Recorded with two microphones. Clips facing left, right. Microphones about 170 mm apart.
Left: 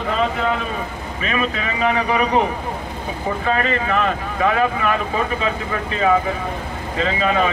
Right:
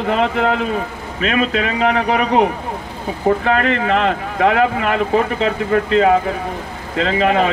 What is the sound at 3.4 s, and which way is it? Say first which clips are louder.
Speech: right 4 dB; 65° right (ahead or behind).